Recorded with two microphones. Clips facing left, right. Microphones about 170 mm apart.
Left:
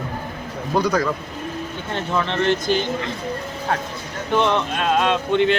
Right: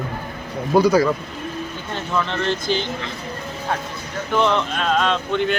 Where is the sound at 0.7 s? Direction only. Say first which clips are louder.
Right 5 dB; 10° right (ahead or behind).